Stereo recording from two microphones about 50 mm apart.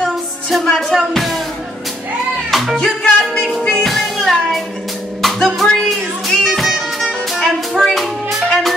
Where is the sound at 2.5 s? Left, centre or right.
Centre.